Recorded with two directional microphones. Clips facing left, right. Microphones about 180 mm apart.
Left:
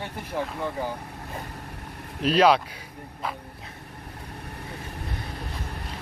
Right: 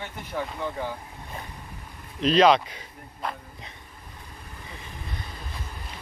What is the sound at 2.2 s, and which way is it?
Speech, 10° left (ahead or behind).